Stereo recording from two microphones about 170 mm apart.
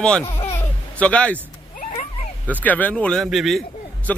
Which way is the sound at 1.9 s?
40° left (ahead or behind).